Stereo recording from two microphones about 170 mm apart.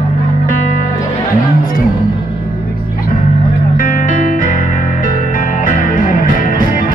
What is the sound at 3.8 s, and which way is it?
Music, 50° left (ahead or behind).